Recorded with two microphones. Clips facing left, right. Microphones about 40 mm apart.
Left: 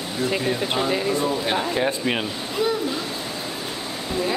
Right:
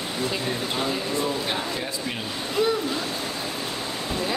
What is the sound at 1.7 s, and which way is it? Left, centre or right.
Speech, left.